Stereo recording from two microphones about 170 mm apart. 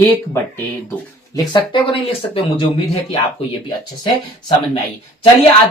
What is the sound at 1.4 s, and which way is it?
Speech, 30° left (ahead or behind).